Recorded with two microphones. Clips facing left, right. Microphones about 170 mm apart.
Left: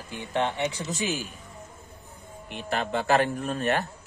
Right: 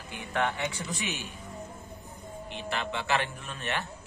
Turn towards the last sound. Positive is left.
turn(degrees=45)  # may be behind; listen again after turning